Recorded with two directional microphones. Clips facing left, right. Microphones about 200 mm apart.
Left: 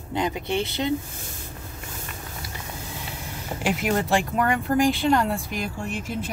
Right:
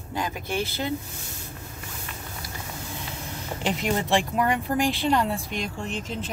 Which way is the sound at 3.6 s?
5° left (ahead or behind).